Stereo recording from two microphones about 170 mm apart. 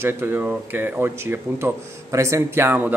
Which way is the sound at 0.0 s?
15° right (ahead or behind).